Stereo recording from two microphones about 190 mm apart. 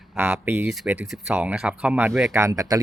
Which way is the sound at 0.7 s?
Centre (ahead or behind).